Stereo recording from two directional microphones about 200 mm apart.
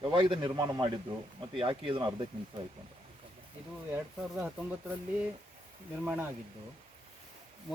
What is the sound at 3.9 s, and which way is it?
Speech, 10° right (ahead or behind).